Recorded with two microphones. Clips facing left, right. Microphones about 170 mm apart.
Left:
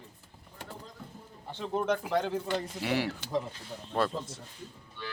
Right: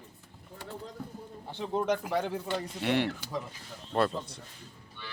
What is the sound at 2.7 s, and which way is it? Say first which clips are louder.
A man's voice: right 2 dB; centre (ahead or behind).